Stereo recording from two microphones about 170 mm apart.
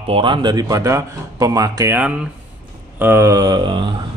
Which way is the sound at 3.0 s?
15° right (ahead or behind).